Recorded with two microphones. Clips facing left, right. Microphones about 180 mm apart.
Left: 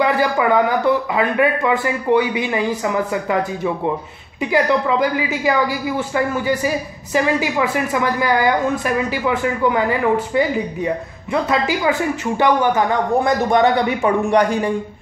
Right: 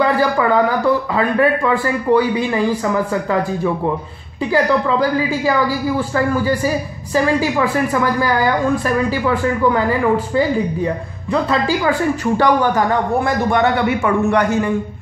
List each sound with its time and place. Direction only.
0.0 s speech: 15° left (ahead or behind)
6.1 s speech: 15° left (ahead or behind)
7.9 s a woman's voice: 20° left (ahead or behind)
13.6 s speech: 15° left (ahead or behind)